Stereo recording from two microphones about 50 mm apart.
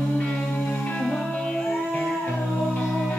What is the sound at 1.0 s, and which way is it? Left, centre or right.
Music, centre.